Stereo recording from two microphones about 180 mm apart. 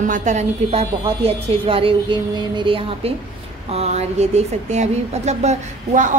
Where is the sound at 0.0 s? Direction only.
45° right (ahead or behind).